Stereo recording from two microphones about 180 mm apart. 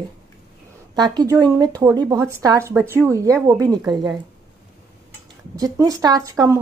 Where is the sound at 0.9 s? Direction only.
20° right (ahead or behind).